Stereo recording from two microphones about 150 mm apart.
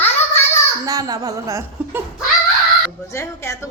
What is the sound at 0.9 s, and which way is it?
A child's voice, 25° right (ahead or behind).